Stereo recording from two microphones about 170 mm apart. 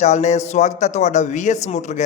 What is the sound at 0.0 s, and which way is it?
A woman's voice, 45° left (ahead or behind).